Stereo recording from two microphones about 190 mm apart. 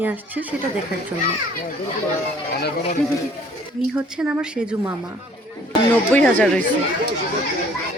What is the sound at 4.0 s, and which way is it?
Speech, 5° right (ahead or behind).